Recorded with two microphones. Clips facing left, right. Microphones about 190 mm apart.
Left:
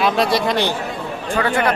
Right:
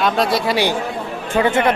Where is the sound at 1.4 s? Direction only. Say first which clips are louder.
Right 3 dB; 25° right (ahead or behind).